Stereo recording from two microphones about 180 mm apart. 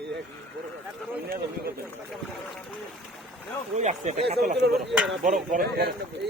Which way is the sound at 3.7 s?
40° right (ahead or behind).